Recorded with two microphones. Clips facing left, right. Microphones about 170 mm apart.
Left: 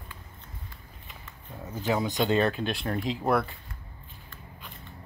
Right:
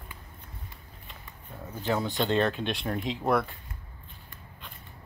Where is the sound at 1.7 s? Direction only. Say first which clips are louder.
Left 1 dB; 10° left (ahead or behind).